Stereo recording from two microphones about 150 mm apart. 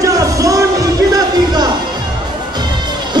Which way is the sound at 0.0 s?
20° right (ahead or behind).